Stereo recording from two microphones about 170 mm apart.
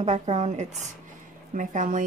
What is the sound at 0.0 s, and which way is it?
A woman's voice, 40° right (ahead or behind).